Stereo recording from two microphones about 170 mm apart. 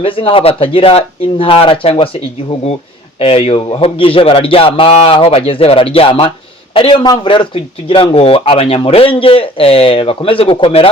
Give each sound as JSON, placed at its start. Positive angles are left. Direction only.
{"t": 0.0, "sound": "speech", "side_deg": 30}
{"t": 3.2, "sound": "speech", "side_deg": 35}